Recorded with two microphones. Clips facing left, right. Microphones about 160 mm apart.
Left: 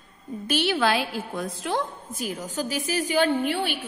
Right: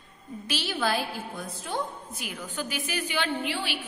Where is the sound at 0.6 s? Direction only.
90° left.